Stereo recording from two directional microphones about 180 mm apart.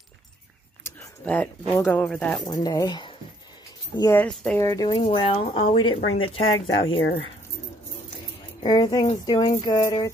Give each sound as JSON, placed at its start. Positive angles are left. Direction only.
{"t": 0.8, "sound": "a sound", "side_deg": 10}
{"t": 1.8, "sound": "speech", "side_deg": 10}
{"t": 2.4, "sound": "speech", "side_deg": 20}
{"t": 4.2, "sound": "speech", "side_deg": 5}
{"t": 4.6, "sound": "speech", "side_deg": 20}
{"t": 5.0, "sound": "speech", "side_deg": 30}
{"t": 6.4, "sound": "speech", "side_deg": 90}
{"t": 8.6, "sound": "speech", "side_deg": 25}